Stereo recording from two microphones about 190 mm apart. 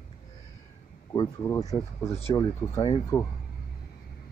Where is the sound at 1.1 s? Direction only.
15° left (ahead or behind).